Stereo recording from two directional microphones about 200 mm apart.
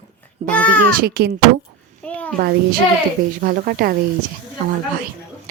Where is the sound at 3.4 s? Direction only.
45° right (ahead or behind).